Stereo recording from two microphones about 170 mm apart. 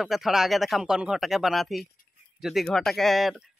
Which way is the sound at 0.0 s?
Centre (ahead or behind).